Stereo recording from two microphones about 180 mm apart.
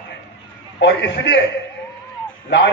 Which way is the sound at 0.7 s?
75° left (ahead or behind).